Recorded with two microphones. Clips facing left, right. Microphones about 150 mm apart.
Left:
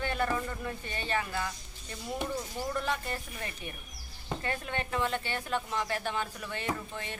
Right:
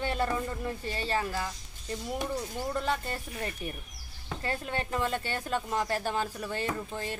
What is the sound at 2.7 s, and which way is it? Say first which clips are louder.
Speech: right 2 dB; 30° right (ahead or behind).